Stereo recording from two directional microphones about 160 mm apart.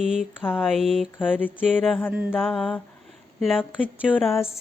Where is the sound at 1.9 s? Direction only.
10° left (ahead or behind).